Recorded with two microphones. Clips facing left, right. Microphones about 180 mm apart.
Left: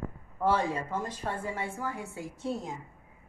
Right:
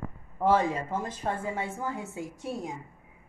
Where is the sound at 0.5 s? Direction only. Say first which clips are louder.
Right 4 dB; 10° right (ahead or behind).